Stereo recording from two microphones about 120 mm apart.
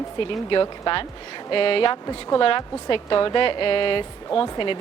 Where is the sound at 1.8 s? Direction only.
35° left (ahead or behind).